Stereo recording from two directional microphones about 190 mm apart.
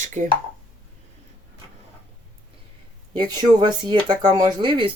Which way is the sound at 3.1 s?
20° right (ahead or behind).